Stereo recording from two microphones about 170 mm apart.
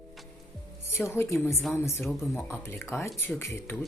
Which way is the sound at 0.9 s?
15° left (ahead or behind).